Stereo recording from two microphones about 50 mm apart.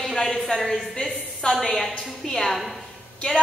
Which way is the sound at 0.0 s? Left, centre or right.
Centre.